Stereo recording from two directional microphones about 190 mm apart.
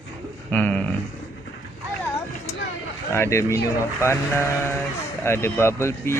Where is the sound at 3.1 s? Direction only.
15° left (ahead or behind).